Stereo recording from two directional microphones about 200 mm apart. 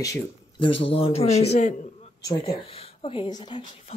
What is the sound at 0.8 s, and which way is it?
A man's voice, 30° left (ahead or behind).